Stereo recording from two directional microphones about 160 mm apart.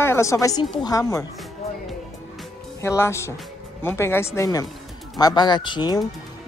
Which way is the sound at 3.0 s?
15° left (ahead or behind).